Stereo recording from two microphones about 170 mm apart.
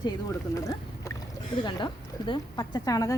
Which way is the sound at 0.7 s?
20° left (ahead or behind).